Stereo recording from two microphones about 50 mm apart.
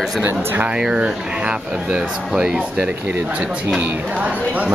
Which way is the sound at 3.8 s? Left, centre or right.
Right.